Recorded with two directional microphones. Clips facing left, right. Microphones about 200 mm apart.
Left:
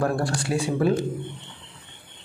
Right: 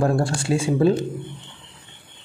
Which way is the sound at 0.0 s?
25° right (ahead or behind).